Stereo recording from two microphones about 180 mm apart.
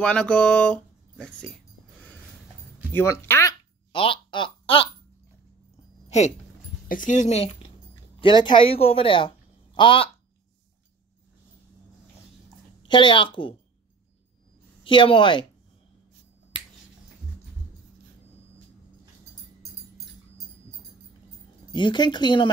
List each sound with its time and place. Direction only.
0.0 s speech: 5° left (ahead or behind)
2.9 s speech: 15° left (ahead or behind)
3.9 s a sound: 30° left (ahead or behind)
6.0 s a sound: 40° left (ahead or behind)
6.9 s speech: 45° left (ahead or behind); by 10.1 s 30° left (ahead or behind)
12.8 s speech: 25° left (ahead or behind)
14.8 s speech: 30° left (ahead or behind)
21.7 s speech: 25° left (ahead or behind)